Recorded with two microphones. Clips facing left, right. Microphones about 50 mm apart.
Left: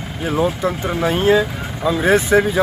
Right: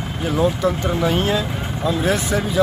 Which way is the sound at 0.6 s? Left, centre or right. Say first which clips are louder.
Even; centre.